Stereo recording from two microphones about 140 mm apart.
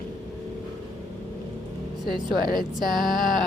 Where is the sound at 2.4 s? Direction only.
90° left.